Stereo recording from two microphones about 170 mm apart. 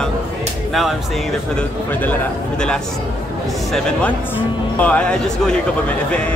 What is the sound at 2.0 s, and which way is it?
A man's voice, 10° left (ahead or behind).